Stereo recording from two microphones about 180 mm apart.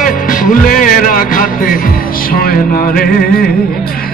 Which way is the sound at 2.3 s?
55° left (ahead or behind).